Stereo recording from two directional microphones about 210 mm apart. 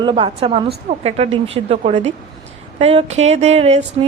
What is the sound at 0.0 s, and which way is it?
A woman's voice, 25° right (ahead or behind).